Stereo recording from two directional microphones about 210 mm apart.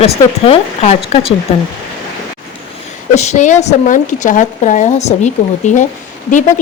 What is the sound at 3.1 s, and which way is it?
A woman's voice, 35° left (ahead or behind).